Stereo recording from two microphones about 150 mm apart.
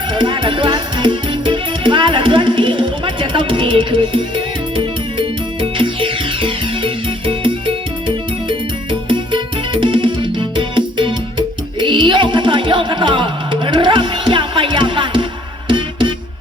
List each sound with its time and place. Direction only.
0.1 s music: 35° right (ahead or behind)